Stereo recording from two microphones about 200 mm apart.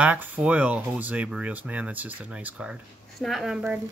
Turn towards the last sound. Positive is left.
turn(degrees=-5)  # may be behind; listen again after turning